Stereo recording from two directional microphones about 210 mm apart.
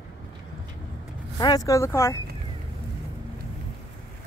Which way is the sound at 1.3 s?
20° left (ahead or behind).